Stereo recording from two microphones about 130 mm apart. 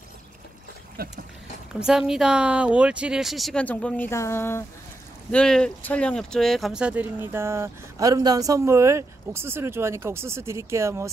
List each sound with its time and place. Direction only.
1.8 s speech: 5° right (ahead or behind)
3.6 s speech: 10° left (ahead or behind)
5.3 s speech: 5° left (ahead or behind); by 11.1 s 20° right (ahead or behind)